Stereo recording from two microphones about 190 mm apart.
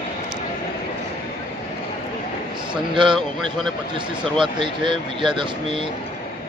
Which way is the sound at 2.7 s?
25° right (ahead or behind).